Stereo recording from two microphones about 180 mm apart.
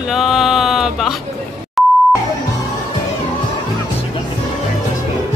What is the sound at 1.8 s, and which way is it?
Beep, centre (ahead or behind).